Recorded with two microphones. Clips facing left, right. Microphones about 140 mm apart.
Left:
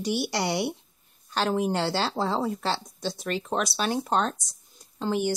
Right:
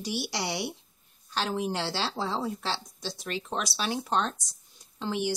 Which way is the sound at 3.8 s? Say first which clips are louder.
Left 2 dB; 45° left (ahead or behind).